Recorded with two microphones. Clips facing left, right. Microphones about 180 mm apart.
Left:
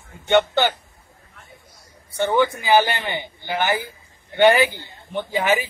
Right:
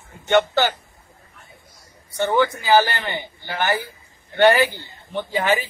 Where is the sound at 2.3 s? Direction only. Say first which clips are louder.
Even; 20° left (ahead or behind).